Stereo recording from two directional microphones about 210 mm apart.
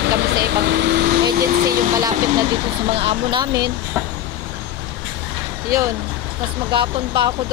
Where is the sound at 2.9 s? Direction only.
25° right (ahead or behind).